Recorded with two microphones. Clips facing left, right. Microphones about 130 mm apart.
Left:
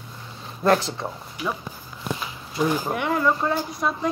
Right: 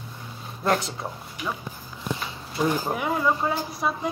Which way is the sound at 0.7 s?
Centre (ahead or behind).